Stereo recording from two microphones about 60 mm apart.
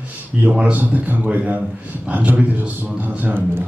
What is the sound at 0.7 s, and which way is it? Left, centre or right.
A man's voice, right.